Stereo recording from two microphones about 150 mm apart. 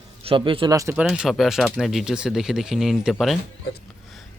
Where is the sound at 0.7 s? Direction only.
20° right (ahead or behind).